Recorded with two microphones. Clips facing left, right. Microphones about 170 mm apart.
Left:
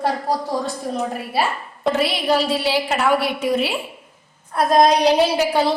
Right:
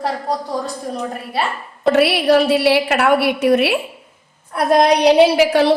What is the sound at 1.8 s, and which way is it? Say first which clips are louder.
A woman's voice: right 6 dB; 70° right (ahead or behind).